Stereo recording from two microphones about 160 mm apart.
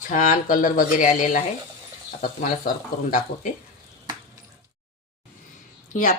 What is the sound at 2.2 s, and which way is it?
Speech, 60° left (ahead or behind).